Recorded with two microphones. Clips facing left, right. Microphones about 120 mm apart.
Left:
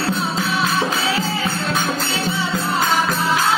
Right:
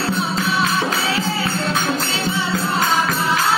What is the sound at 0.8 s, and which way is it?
Tambourine, 15° left (ahead or behind).